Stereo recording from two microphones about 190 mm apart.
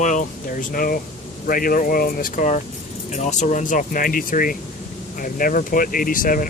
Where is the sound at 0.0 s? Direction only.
40° left (ahead or behind).